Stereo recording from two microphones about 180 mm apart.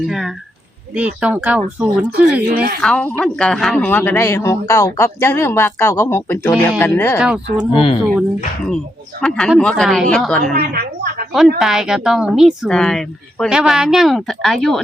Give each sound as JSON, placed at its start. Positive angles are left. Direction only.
{"t": 0.0, "sound": "speech", "side_deg": 0}
{"t": 2.5, "sound": "speech", "side_deg": -60}
{"t": 2.8, "sound": "speech", "side_deg": 5}
{"t": 7.2, "sound": "speech", "side_deg": -5}
{"t": 7.7, "sound": "speech", "side_deg": 30}
{"t": 9.2, "sound": "speech", "side_deg": 5}
{"t": 10.5, "sound": "speech", "side_deg": -55}
{"t": 11.3, "sound": "speech", "side_deg": 0}